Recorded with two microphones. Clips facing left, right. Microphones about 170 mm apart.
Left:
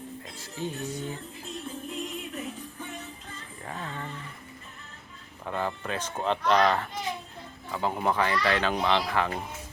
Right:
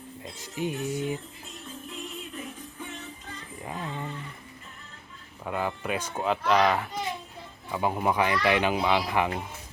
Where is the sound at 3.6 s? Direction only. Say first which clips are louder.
Right 2 dB; 15° right (ahead or behind).